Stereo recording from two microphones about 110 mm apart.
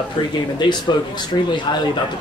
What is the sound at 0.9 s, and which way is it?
Speech, 40° left (ahead or behind).